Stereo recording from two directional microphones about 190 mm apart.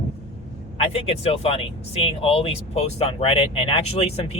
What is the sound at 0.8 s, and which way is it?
Speech, 30° left (ahead or behind).